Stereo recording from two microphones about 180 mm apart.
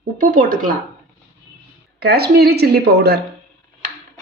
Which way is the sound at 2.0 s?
60° right (ahead or behind).